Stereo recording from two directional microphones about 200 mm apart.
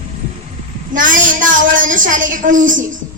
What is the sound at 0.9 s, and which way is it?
A woman's voice, 40° right (ahead or behind).